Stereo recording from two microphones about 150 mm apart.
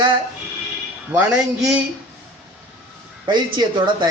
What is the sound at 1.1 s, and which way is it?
Speech, 5° right (ahead or behind).